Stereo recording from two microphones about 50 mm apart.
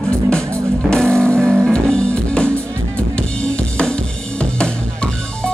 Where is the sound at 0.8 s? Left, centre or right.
Centre.